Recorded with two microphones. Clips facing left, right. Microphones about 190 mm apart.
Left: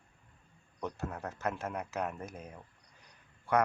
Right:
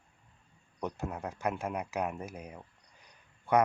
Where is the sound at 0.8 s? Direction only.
15° right (ahead or behind).